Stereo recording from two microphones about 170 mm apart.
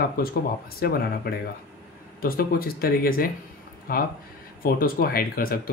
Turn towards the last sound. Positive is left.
turn(degrees=60)  # may be behind; listen again after turning